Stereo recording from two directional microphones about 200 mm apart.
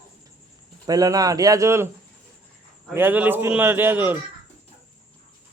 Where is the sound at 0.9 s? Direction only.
20° right (ahead or behind).